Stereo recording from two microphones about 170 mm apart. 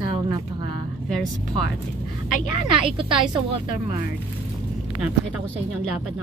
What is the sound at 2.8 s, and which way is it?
Speech, 30° right (ahead or behind).